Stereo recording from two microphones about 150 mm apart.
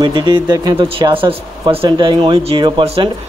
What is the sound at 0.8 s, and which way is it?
Speech, 35° right (ahead or behind).